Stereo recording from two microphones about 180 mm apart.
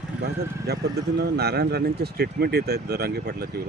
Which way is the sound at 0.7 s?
65° right (ahead or behind).